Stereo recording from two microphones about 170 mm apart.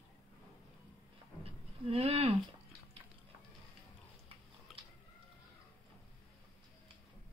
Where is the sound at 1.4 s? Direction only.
35° right (ahead or behind).